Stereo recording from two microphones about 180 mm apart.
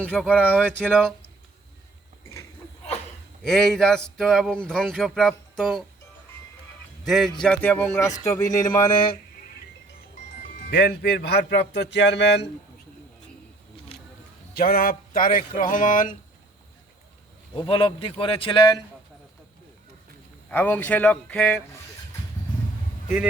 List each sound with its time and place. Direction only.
0.0 s speech: 10° left (ahead or behind)
3.4 s speech: centre (ahead or behind)
7.0 s a man's voice: centre (ahead or behind); by 8.9 s 15° left (ahead or behind)
10.7 s a man's voice: 65° left (ahead or behind)
14.5 s speech: 55° left (ahead or behind)
17.7 s a man's voice: 30° left (ahead or behind)
20.5 s speech: 10° left (ahead or behind)